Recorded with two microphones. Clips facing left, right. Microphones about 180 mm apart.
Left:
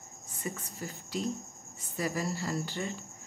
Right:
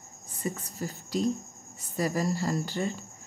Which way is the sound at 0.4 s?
40° right (ahead or behind).